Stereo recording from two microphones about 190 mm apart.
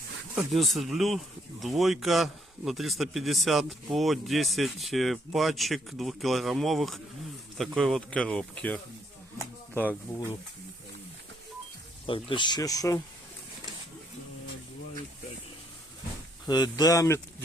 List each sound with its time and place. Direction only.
0.3 s speech: centre (ahead or behind)
12.0 s speech: 25° left (ahead or behind)
16.5 s speech: 20° left (ahead or behind)